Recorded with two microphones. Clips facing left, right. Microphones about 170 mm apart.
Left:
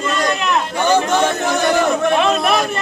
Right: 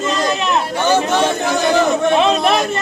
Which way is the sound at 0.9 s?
10° right (ahead or behind).